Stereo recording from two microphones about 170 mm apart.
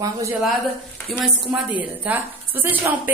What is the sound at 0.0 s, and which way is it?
Speech, 20° right (ahead or behind).